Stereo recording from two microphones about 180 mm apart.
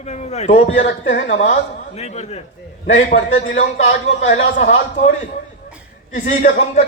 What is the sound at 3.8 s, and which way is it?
Speech, 90° left.